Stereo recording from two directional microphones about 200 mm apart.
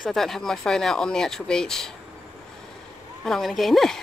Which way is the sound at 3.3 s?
Centre (ahead or behind).